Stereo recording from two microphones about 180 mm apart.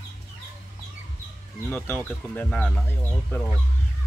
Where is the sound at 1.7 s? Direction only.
10° left (ahead or behind).